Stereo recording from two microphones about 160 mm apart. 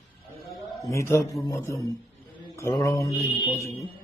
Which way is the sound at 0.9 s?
20° left (ahead or behind).